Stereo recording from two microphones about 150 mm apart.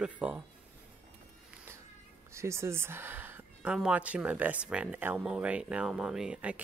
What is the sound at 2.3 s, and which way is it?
Speech, 20° right (ahead or behind).